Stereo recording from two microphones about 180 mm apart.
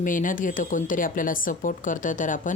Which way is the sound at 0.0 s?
50° left (ahead or behind).